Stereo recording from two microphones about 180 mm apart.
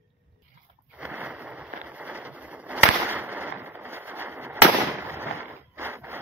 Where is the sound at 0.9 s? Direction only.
10° right (ahead or behind).